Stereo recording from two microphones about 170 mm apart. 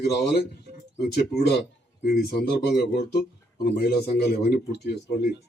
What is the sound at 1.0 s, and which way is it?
Speech, 75° left (ahead or behind).